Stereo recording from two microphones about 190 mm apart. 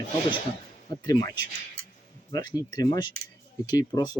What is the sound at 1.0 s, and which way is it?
Speech, 20° left (ahead or behind).